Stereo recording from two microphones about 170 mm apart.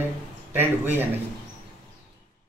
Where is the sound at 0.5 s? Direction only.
10° right (ahead or behind).